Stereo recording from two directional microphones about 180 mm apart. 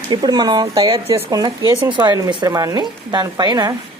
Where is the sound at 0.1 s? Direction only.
25° right (ahead or behind).